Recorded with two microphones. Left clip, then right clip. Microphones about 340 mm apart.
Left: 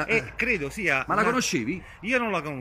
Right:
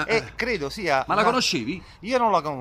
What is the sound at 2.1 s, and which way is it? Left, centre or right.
Speech, centre.